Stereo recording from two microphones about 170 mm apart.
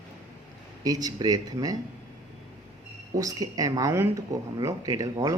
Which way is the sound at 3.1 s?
20° right (ahead or behind).